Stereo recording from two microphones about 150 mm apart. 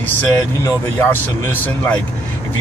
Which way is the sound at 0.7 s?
20° left (ahead or behind).